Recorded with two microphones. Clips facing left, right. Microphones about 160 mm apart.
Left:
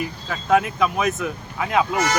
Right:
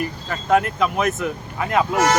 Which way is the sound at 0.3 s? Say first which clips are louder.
Even; centre (ahead or behind).